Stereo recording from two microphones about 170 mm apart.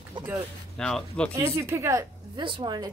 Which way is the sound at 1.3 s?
15° right (ahead or behind).